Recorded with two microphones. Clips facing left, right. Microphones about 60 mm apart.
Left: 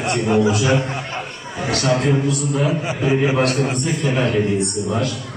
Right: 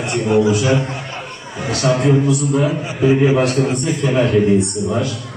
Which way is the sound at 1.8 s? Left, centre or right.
Right.